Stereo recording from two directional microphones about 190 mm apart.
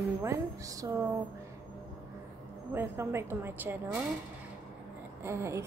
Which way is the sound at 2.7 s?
15° right (ahead or behind).